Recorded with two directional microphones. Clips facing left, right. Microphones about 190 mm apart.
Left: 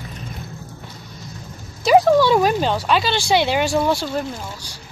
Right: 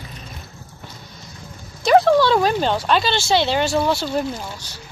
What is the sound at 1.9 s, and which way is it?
Speech, 10° left (ahead or behind).